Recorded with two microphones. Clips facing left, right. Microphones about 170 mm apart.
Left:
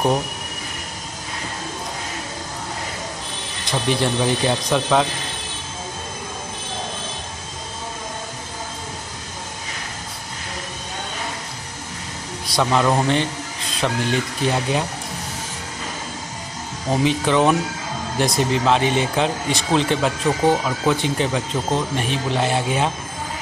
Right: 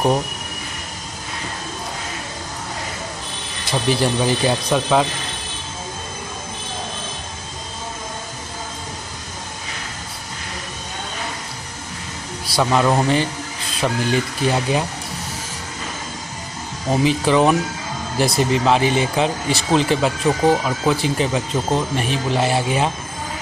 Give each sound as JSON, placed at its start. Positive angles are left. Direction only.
{"t": 3.6, "sound": "speech", "side_deg": -5}
{"t": 12.4, "sound": "speech", "side_deg": -5}
{"t": 16.9, "sound": "speech", "side_deg": 0}